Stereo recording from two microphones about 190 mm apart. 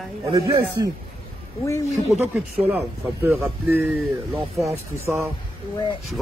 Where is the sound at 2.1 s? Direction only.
5° right (ahead or behind).